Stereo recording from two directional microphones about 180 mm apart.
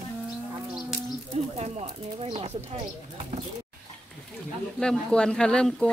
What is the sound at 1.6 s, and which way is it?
Speech, 35° right (ahead or behind).